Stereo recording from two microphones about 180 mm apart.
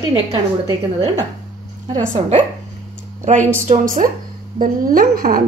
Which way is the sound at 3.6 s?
45° right (ahead or behind).